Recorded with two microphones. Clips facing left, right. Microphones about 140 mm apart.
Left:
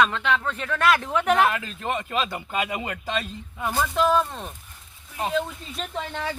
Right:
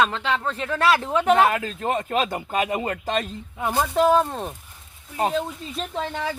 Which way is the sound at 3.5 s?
25° right (ahead or behind).